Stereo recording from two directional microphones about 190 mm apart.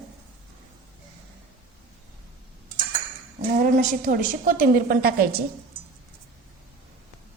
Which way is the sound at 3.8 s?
45° right (ahead or behind).